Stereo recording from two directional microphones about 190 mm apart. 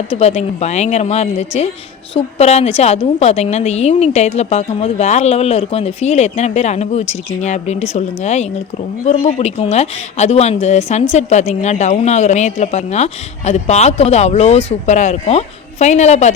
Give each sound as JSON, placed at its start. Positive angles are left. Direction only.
{"t": 0.1, "sound": "a woman's voice", "side_deg": 35}